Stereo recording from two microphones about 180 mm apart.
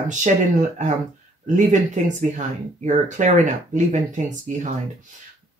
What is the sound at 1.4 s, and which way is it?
Speech, 40° right (ahead or behind).